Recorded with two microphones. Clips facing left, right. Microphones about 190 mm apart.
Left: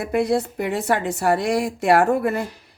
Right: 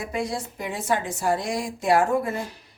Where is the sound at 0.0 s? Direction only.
60° left (ahead or behind).